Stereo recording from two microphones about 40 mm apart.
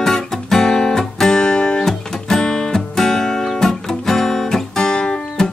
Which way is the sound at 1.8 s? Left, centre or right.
Centre.